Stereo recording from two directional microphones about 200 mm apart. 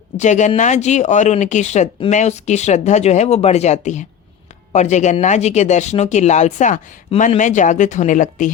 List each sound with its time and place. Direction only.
0.2 s speech: 35° left (ahead or behind)